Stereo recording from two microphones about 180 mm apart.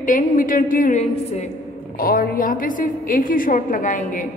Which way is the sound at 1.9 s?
55° left (ahead or behind).